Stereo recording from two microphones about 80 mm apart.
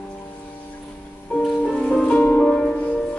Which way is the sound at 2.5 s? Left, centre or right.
Centre.